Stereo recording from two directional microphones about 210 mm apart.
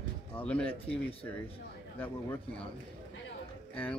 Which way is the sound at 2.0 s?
10° left (ahead or behind).